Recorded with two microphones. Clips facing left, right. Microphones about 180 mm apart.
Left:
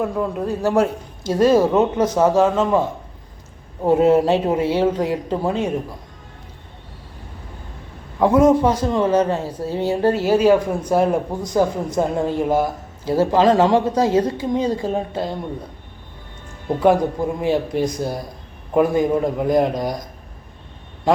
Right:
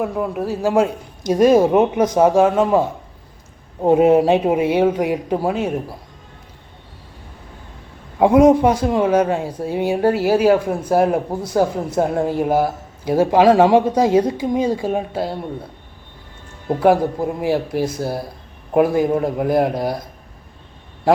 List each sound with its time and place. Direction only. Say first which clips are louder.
0.0 s speech: even; 10° right (ahead or behind)
8.2 s speech: right 2 dB; 15° right (ahead or behind)
16.8 s speech: right 1 dB; 10° right (ahead or behind)